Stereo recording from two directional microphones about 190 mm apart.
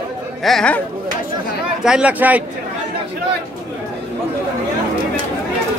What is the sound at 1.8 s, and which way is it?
Speech, 5° right (ahead or behind).